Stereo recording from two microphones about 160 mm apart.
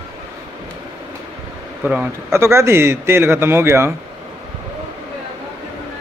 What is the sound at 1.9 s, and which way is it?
A man's voice, 10° right (ahead or behind).